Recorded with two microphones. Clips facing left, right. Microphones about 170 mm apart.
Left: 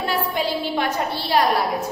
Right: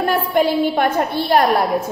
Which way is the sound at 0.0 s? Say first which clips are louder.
Right 7 dB; 55° right (ahead or behind).